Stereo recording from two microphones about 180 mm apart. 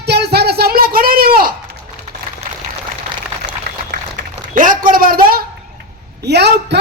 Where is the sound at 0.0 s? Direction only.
65° right (ahead or behind).